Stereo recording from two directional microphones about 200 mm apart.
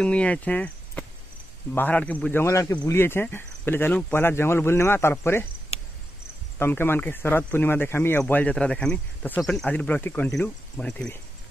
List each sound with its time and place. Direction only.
0.0 s speech: 5° left (ahead or behind)
5.7 s cricket: 30° left (ahead or behind)
6.6 s speech: 10° left (ahead or behind)